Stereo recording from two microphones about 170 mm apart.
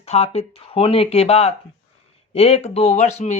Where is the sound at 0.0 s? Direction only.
35° left (ahead or behind).